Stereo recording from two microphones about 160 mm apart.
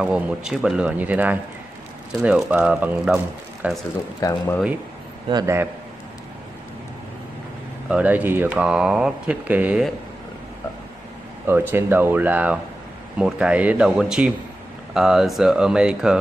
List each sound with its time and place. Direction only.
0.0 s speech: 5° right (ahead or behind)
4.2 s speech: 20° left (ahead or behind)
5.3 s a man's voice: 20° right (ahead or behind)
7.9 s speech: 10° right (ahead or behind)
11.4 s speech: 15° right (ahead or behind)